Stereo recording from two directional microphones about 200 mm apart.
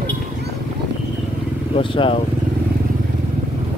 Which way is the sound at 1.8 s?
25° left (ahead or behind).